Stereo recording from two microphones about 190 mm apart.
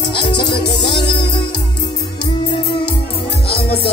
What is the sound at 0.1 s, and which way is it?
Music, 25° left (ahead or behind).